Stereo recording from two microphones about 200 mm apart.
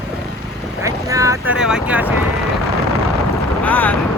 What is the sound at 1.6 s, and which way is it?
Speech, 5° right (ahead or behind).